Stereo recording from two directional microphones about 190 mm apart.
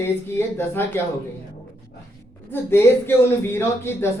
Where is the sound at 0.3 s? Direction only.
10° left (ahead or behind).